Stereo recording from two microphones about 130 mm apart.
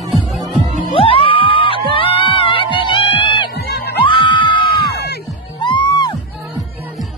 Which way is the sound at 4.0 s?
40° left (ahead or behind).